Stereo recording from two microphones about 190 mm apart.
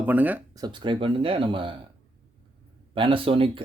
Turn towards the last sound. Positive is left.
turn(degrees=-25)  # may be behind; listen again after turning